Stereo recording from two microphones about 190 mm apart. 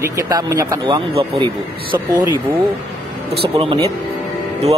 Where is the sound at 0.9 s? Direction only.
30° right (ahead or behind).